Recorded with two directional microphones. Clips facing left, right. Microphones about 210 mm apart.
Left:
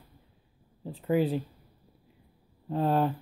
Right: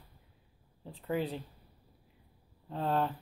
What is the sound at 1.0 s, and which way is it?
Speech, 5° left (ahead or behind).